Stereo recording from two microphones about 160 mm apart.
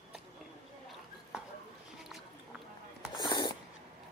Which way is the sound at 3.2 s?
25° left (ahead or behind).